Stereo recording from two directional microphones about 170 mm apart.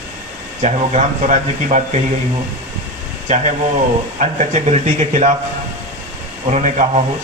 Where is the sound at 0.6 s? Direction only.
45° right (ahead or behind).